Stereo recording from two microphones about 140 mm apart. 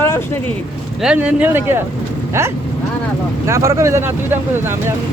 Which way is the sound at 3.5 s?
20° right (ahead or behind).